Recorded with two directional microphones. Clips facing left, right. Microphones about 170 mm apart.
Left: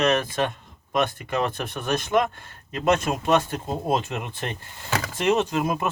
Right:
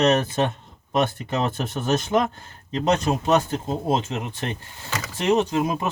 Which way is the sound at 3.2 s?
25° right (ahead or behind).